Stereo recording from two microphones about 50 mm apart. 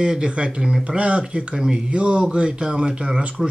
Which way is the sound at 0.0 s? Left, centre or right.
Centre.